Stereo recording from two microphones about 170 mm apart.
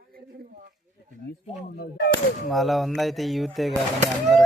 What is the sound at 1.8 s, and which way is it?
Artillery fire, 65° left (ahead or behind).